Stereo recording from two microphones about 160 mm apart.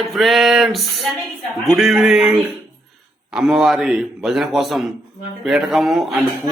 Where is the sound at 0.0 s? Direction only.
Centre (ahead or behind).